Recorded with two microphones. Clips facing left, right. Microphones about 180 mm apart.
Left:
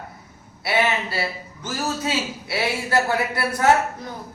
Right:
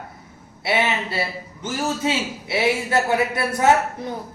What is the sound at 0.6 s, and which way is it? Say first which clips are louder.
A man's voice: even; 25° right (ahead or behind).